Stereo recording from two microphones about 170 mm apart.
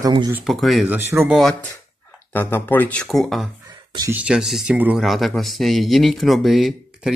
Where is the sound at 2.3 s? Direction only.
10° left (ahead or behind).